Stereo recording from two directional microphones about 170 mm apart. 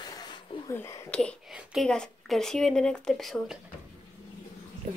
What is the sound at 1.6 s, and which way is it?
Speech, centre (ahead or behind).